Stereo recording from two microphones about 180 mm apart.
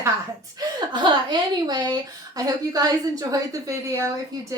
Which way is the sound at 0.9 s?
25° right (ahead or behind).